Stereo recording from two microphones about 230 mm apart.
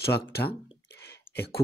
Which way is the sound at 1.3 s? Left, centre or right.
Left.